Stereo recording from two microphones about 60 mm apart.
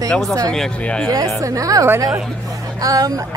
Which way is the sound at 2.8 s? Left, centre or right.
Right.